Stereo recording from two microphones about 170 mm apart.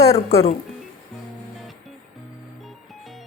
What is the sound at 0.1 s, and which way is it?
Speech, 35° left (ahead or behind).